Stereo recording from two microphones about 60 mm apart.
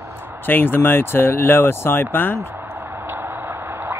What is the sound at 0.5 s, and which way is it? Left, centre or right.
Speech, left.